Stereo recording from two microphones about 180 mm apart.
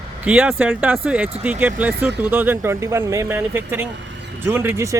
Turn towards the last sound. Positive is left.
turn(degrees=-15)  # may be behind; listen again after turning